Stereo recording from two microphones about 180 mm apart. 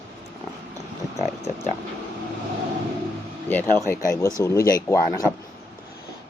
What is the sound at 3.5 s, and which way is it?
Speech, 10° left (ahead or behind).